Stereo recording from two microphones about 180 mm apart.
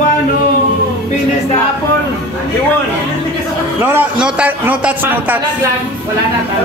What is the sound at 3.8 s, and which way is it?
A man's voice, 10° right (ahead or behind).